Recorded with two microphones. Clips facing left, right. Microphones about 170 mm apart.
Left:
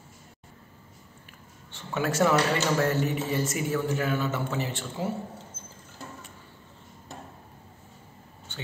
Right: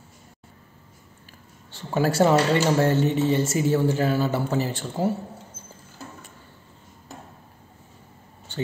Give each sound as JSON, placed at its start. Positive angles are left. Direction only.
{"t": 1.7, "sound": "speech", "side_deg": -35}